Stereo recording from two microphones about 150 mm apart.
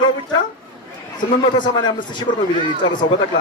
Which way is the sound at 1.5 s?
30° left (ahead or behind).